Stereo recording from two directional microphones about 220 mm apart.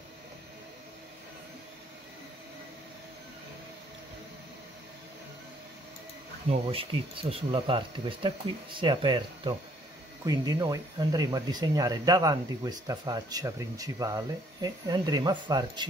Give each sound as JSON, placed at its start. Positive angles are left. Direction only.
{"t": 6.5, "sound": "speech", "side_deg": -25}